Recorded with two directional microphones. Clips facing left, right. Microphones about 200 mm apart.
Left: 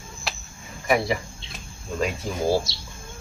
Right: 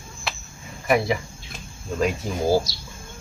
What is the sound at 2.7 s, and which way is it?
Speech, 25° left (ahead or behind).